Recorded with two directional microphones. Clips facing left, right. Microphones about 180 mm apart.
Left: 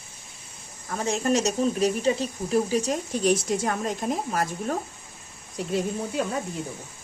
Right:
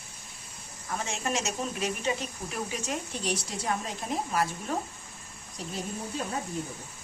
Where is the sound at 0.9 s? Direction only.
40° left (ahead or behind).